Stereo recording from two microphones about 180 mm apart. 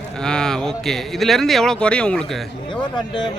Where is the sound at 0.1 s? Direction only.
5° left (ahead or behind).